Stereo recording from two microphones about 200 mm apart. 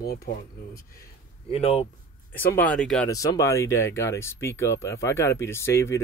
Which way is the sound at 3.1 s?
15° left (ahead or behind).